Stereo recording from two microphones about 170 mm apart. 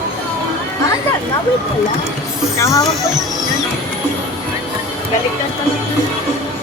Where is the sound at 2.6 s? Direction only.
20° left (ahead or behind).